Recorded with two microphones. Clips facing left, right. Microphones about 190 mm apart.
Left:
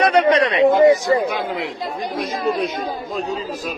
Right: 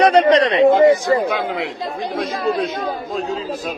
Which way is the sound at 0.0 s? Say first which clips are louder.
Right 3 dB; 35° right (ahead or behind).